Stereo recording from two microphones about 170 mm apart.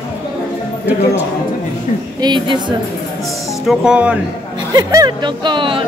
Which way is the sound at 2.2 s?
25° right (ahead or behind).